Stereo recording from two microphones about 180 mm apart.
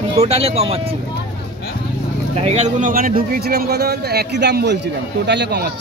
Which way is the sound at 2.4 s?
40° right (ahead or behind).